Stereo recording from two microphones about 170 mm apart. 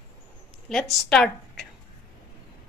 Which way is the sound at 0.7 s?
Centre (ahead or behind).